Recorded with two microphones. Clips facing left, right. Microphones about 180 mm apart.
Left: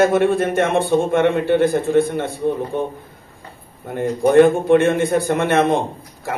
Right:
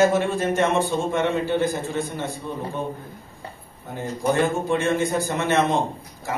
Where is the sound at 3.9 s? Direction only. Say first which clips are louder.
Left 8 dB; 60° left (ahead or behind).